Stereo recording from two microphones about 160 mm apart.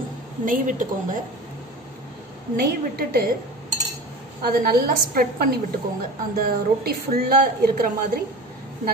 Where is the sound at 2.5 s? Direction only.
70° right (ahead or behind).